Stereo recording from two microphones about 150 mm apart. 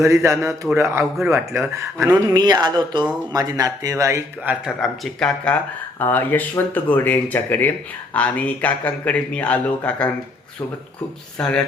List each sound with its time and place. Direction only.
0.0 s speech: 20° right (ahead or behind)
4.6 s a man's voice: centre (ahead or behind)
11.3 s speech: 5° left (ahead or behind)